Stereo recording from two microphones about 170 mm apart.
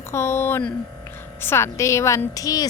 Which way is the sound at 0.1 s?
15° left (ahead or behind).